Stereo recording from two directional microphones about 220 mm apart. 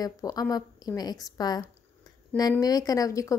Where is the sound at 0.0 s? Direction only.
15° left (ahead or behind).